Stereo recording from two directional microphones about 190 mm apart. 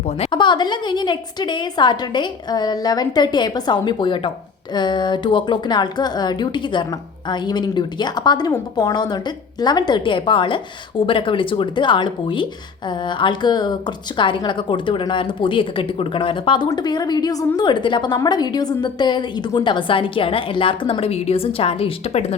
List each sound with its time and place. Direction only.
0.2 s a woman's voice: 25° left (ahead or behind)